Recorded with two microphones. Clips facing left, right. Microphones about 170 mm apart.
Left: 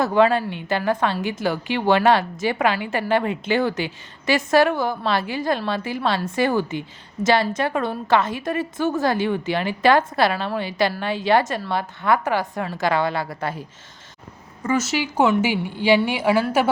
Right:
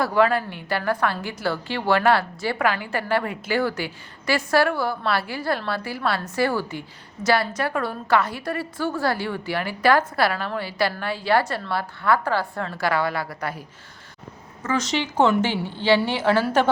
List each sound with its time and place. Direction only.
0.0 s a woman's voice: 20° left (ahead or behind)
14.6 s a woman's voice: 10° left (ahead or behind)